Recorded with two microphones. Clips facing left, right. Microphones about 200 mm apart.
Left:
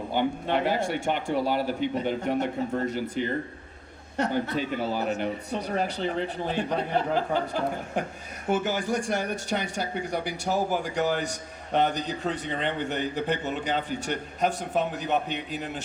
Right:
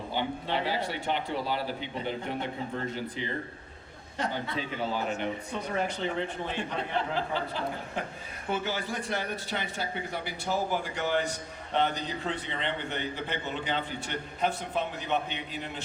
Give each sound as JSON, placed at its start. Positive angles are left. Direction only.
{"t": 0.1, "sound": "a man's voice", "side_deg": 50}
{"t": 4.7, "sound": "a man's voice", "side_deg": 40}